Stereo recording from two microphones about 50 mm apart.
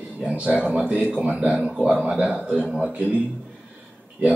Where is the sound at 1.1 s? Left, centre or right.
Right.